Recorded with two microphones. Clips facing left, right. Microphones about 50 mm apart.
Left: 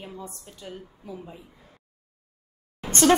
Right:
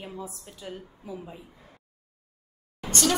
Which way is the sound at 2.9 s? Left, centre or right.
Left.